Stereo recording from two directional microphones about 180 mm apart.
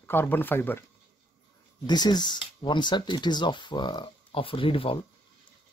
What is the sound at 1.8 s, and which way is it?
Speech, 25° left (ahead or behind).